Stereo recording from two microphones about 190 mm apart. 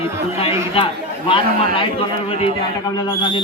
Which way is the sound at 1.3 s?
25° left (ahead or behind).